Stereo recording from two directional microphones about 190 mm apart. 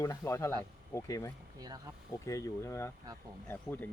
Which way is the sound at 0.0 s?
15° left (ahead or behind).